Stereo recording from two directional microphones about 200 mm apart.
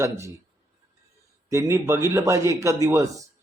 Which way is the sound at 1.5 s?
15° right (ahead or behind).